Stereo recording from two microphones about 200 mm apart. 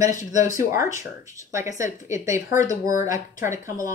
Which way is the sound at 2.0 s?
15° right (ahead or behind).